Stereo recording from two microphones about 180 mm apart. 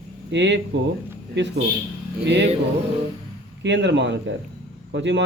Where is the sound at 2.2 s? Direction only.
70° right (ahead or behind).